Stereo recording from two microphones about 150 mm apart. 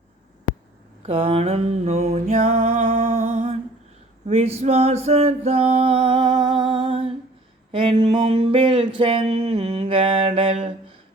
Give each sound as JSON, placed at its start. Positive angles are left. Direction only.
{"t": 1.0, "sound": "music", "side_deg": -40}
{"t": 4.6, "sound": "music", "side_deg": -45}
{"t": 7.7, "sound": "mantra", "side_deg": -40}